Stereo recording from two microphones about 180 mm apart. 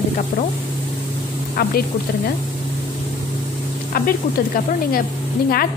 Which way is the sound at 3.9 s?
55° left (ahead or behind).